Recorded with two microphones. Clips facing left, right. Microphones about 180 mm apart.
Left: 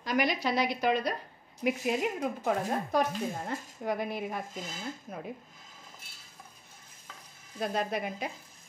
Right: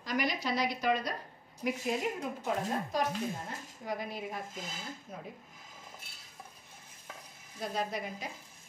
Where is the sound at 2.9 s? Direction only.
60° left (ahead or behind).